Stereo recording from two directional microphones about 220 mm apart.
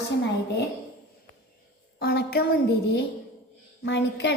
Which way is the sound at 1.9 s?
45° left (ahead or behind).